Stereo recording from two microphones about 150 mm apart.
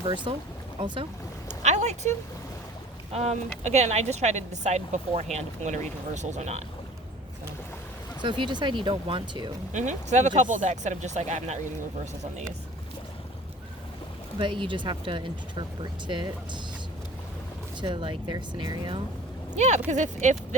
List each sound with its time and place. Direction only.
0.0 s speech: 35° right (ahead or behind)
1.6 s a sound: 50° right (ahead or behind)
3.1 s speech: 45° right (ahead or behind)
8.2 s speech: 30° right (ahead or behind)
9.7 s speech: 50° right (ahead or behind)
14.3 s speech: 35° right (ahead or behind)
17.7 s speech: 30° right (ahead or behind)
19.5 s speech: 50° right (ahead or behind)